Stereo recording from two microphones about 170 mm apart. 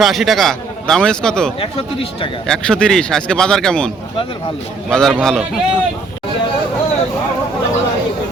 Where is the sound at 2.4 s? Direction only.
5° left (ahead or behind).